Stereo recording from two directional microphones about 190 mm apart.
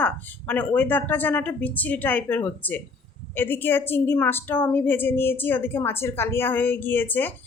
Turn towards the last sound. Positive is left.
turn(degrees=10)  # may be behind; listen again after turning